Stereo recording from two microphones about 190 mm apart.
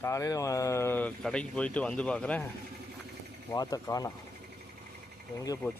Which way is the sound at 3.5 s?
20° left (ahead or behind).